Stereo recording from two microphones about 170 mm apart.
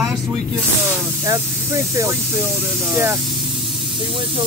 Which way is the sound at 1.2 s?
20° right (ahead or behind).